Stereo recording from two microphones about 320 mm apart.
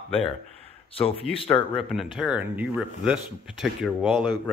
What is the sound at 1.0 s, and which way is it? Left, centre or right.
Speech, centre.